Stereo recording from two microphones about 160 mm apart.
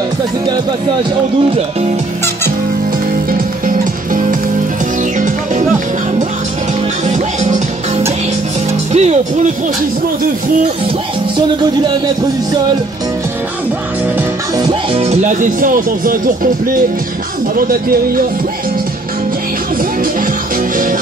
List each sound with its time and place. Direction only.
3.6 s music: 60° right (ahead or behind)
7.1 s music: 50° right (ahead or behind)
8.9 s speech: 45° right (ahead or behind)
15.0 s speech: 45° right (ahead or behind)
17.6 s speech: 65° right (ahead or behind)